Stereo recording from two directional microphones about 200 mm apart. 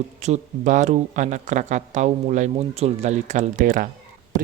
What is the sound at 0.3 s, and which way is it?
Speech, 35° right (ahead or behind).